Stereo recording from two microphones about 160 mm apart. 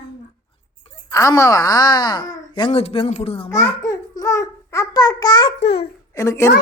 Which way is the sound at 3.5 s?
20° left (ahead or behind).